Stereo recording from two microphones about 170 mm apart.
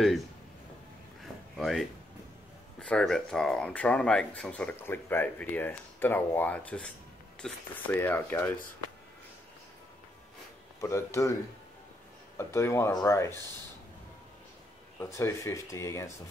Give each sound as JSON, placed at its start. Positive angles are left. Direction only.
{"t": 1.2, "sound": "a sound", "side_deg": 0}
{"t": 2.8, "sound": "speech", "side_deg": 5}
{"t": 10.8, "sound": "speech", "side_deg": 15}
{"t": 12.4, "sound": "speech", "side_deg": 15}
{"t": 15.0, "sound": "speech", "side_deg": 15}